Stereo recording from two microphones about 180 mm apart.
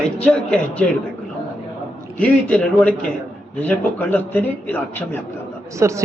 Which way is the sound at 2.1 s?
5° left (ahead or behind).